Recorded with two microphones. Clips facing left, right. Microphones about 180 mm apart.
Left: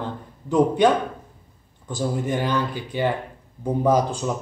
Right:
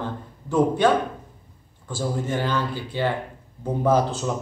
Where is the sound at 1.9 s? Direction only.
15° left (ahead or behind).